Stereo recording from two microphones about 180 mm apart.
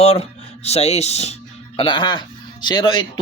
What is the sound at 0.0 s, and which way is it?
Speech, 35° left (ahead or behind).